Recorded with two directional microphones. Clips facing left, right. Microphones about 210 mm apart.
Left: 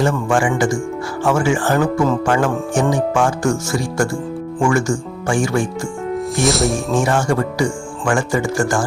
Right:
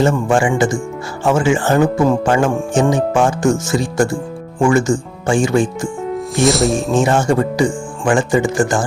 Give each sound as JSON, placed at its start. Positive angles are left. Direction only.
{"t": 0.0, "sound": "speech", "side_deg": -25}
{"t": 6.3, "sound": "speech", "side_deg": 0}
{"t": 6.9, "sound": "speech", "side_deg": -20}